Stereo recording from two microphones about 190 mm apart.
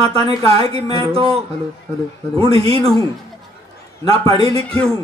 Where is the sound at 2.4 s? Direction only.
30° right (ahead or behind).